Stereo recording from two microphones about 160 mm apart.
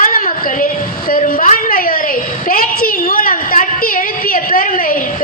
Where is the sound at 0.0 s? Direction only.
60° left (ahead or behind).